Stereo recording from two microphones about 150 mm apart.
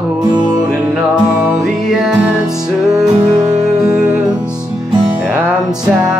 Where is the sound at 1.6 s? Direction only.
Centre (ahead or behind).